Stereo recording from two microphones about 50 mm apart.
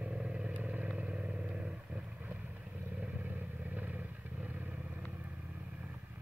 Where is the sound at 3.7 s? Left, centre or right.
Right.